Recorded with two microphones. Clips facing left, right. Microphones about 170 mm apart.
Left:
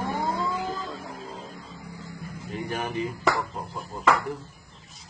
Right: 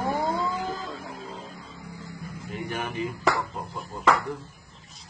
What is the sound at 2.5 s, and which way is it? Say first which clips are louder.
Speech: left 2 dB; 35° left (ahead or behind).